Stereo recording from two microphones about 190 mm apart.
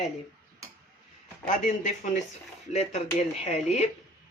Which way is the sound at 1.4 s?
40° left (ahead or behind).